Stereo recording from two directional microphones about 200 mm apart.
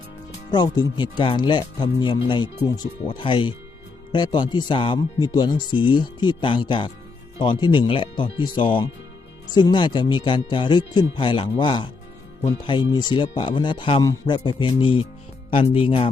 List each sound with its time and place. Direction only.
0.5 s speech: 20° left (ahead or behind)